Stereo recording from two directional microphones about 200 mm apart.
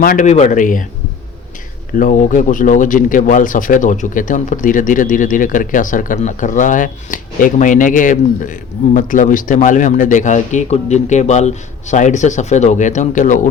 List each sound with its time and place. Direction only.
0.0 s speech: 45° left (ahead or behind)
2.0 s speech: 40° left (ahead or behind)